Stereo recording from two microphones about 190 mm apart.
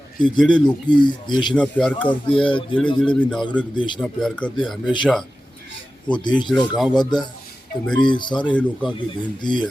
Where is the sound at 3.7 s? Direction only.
25° left (ahead or behind).